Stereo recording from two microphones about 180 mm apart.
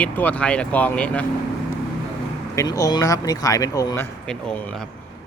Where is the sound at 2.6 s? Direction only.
20° left (ahead or behind).